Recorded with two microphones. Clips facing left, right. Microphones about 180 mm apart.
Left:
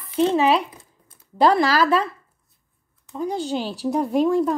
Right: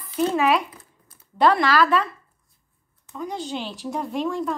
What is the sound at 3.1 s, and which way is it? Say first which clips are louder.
Speech: left 5 dB; 35° left (ahead or behind).